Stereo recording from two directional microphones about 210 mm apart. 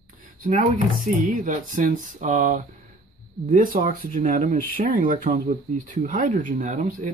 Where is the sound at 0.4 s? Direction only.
35° right (ahead or behind).